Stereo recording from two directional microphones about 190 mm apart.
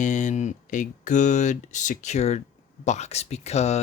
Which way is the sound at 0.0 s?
40° left (ahead or behind).